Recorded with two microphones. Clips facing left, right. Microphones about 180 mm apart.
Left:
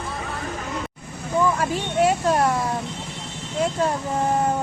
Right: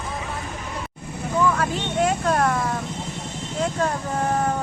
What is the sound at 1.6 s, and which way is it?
Vehicle, 10° left (ahead or behind).